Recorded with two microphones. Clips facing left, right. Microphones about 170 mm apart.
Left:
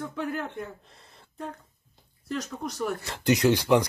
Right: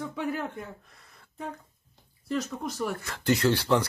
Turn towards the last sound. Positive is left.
turn(degrees=15)  # may be behind; listen again after turning